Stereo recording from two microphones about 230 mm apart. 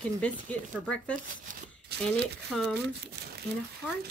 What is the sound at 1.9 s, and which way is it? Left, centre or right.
Speech, right.